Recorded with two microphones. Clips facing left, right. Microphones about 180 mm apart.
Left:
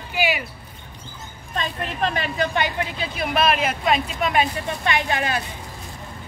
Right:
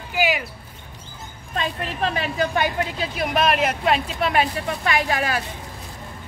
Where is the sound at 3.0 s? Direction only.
40° right (ahead or behind).